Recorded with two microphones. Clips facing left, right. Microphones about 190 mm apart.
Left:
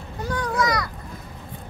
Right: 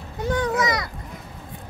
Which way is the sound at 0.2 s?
25° right (ahead or behind).